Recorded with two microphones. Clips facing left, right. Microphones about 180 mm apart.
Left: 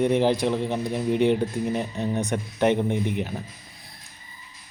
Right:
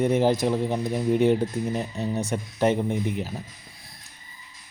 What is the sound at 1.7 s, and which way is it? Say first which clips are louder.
Speech: left 2 dB; 10° left (ahead or behind).